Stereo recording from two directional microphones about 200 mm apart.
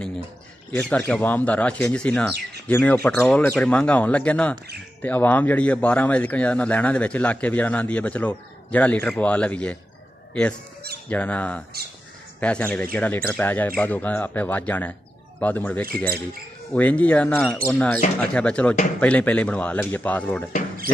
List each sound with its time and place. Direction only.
0.7 s speech: 5° left (ahead or behind)
11.1 s speech: 5° left (ahead or behind)